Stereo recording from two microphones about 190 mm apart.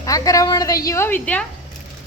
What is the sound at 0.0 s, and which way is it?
A woman's voice, 20° left (ahead or behind).